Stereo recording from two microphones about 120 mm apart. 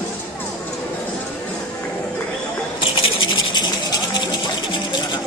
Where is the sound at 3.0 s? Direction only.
40° left (ahead or behind).